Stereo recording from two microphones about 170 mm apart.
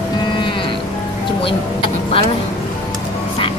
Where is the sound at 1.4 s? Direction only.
30° left (ahead or behind).